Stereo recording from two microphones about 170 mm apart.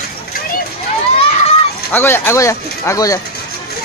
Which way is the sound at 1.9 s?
15° left (ahead or behind).